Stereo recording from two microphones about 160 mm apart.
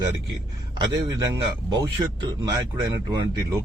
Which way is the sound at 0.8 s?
25° right (ahead or behind).